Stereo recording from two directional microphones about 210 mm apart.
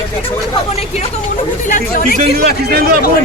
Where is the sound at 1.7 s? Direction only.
40° left (ahead or behind).